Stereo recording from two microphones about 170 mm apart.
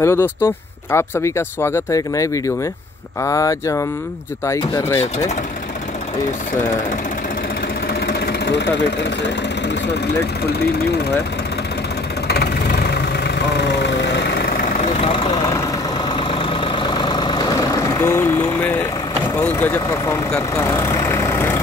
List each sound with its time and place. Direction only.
0.0 s speech: 15° left (ahead or behind)
8.1 s engine: 80° left
12.3 s vehicle: 70° left (ahead or behind)
13.6 s vehicle: 85° left
14.9 s vehicle: 35° left (ahead or behind)
16.2 s vehicle: 30° left (ahead or behind); by 18.7 s 15° left (ahead or behind)
19.4 s speech: 10° left (ahead or behind)